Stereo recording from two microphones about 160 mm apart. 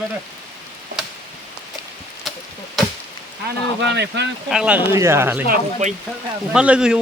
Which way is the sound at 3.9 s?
90° right.